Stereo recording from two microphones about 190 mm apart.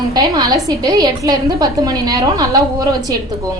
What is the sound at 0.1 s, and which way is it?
A woman's voice, 20° right (ahead or behind).